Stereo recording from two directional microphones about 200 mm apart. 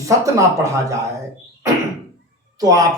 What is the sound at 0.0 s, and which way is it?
Speech, 15° right (ahead or behind).